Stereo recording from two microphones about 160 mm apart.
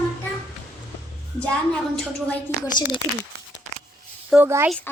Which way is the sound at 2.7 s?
25° left (ahead or behind).